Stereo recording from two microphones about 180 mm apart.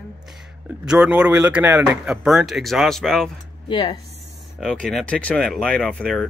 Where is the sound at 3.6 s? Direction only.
25° left (ahead or behind).